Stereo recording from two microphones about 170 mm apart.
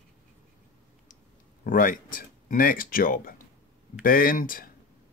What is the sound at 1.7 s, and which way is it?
Speech, 55° left (ahead or behind).